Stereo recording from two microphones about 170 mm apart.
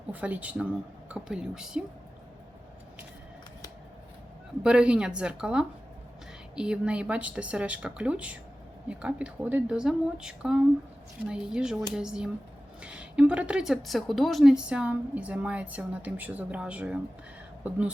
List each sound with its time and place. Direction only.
0.1 s a woman's voice: 10° right (ahead or behind)
4.6 s a woman's voice: 5° right (ahead or behind)